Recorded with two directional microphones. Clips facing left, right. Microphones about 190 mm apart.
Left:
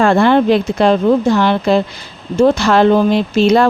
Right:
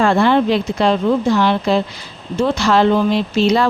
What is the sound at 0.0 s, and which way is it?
Speech, 50° left (ahead or behind).